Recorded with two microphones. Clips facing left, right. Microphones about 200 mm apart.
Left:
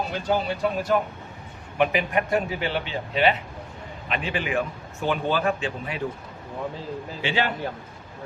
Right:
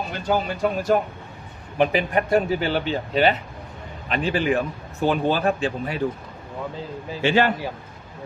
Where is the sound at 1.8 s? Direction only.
35° right (ahead or behind).